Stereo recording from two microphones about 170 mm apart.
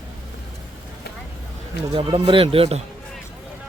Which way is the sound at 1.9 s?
30° right (ahead or behind).